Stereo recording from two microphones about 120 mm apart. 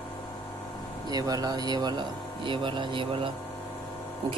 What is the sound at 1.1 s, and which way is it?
Speech, 35° right (ahead or behind).